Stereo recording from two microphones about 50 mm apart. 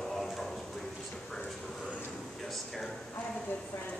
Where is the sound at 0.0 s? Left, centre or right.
Centre.